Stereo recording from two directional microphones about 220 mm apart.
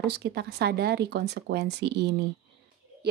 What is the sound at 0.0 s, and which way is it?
A woman's voice, 50° right (ahead or behind).